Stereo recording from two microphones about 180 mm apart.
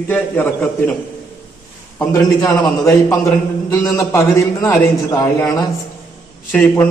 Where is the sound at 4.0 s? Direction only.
15° left (ahead or behind).